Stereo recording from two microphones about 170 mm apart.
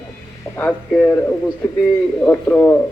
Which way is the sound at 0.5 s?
5° left (ahead or behind).